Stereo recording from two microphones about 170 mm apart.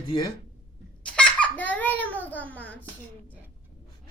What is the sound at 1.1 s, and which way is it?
Baby laughter, 10° left (ahead or behind).